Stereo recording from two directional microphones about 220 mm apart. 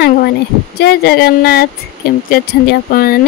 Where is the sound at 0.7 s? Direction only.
45° left (ahead or behind).